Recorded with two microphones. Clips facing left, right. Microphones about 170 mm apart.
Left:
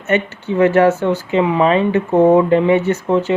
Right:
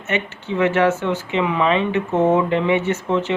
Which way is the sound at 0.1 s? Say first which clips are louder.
Left 6 dB; 40° left (ahead or behind).